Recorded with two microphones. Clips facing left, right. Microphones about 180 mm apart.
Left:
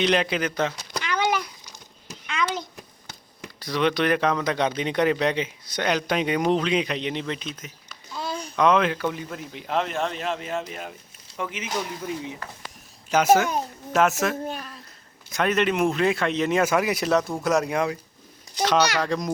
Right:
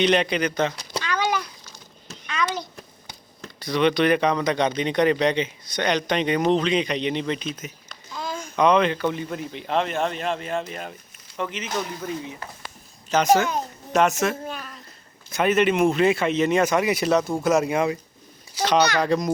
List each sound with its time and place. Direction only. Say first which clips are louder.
0.0 s speech: right 2 dB; centre (ahead or behind)
1.0 s a sound: left 1 dB; 15° left (ahead or behind)
3.6 s speech: right 3 dB; centre (ahead or behind)